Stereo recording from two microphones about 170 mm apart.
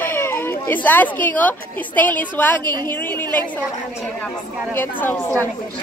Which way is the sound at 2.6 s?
25° right (ahead or behind).